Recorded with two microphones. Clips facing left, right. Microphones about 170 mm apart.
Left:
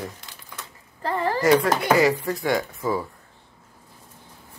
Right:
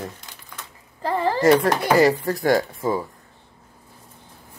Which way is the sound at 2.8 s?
25° right (ahead or behind).